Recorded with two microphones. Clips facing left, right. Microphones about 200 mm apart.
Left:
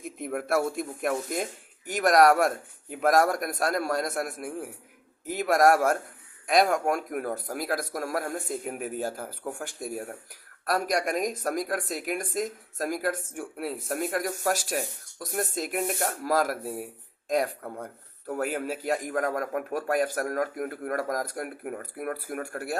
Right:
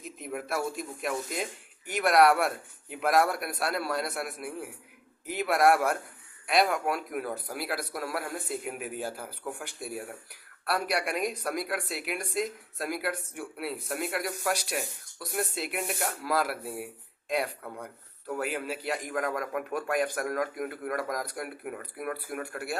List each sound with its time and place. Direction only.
0.0 s speech: 50° left (ahead or behind)